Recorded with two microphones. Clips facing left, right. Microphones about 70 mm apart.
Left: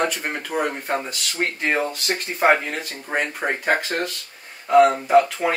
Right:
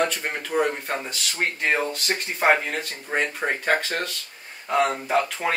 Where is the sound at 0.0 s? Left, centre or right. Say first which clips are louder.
Left 1 dB; centre.